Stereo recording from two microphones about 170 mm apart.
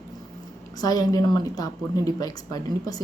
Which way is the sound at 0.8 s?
20° left (ahead or behind).